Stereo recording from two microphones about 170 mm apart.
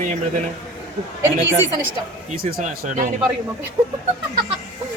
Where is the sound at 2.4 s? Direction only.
55° right (ahead or behind).